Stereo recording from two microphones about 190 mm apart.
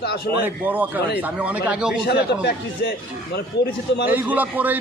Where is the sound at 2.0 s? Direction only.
60° left (ahead or behind).